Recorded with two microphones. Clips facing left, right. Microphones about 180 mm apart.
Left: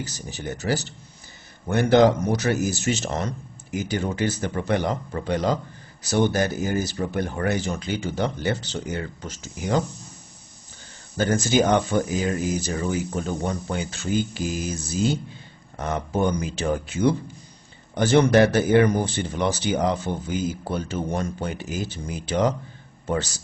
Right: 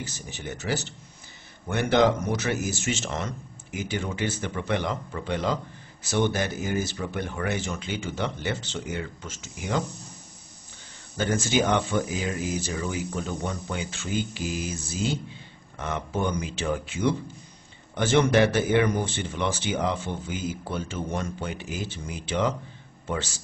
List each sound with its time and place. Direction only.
0.0 s speech: 35° left (ahead or behind)
11.1 s speech: 40° left (ahead or behind)